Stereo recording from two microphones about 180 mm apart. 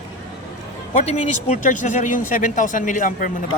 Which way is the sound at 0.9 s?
40° left (ahead or behind).